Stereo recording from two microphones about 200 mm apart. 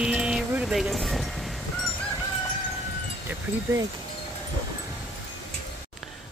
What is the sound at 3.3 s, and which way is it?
Wind chime, 10° right (ahead or behind).